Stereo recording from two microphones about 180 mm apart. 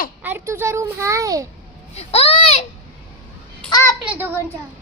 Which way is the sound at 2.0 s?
35° left (ahead or behind).